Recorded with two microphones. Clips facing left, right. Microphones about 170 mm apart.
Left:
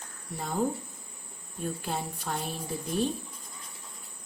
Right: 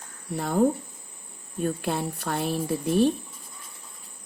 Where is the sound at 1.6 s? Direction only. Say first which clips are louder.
Right 6 dB; 70° right (ahead or behind).